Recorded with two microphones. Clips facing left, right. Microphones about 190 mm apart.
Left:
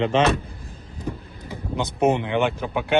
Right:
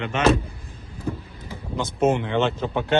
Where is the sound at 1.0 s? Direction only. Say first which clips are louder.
Right 2 dB; 15° left (ahead or behind).